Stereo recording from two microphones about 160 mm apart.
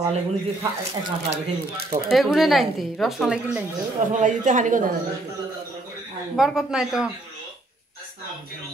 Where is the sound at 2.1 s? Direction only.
Centre (ahead or behind).